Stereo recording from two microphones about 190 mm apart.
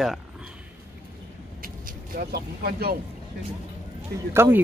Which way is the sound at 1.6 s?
50° right (ahead or behind).